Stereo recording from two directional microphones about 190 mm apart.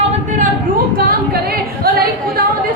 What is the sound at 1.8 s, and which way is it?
Speech, 55° right (ahead or behind).